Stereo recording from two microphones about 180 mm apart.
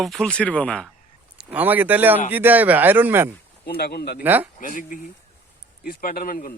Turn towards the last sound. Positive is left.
turn(degrees=50)  # may be behind; listen again after turning